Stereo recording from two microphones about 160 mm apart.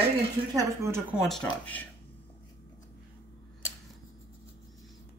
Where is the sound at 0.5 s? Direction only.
20° right (ahead or behind).